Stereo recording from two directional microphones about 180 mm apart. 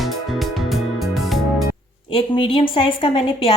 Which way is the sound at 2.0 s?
30° left (ahead or behind).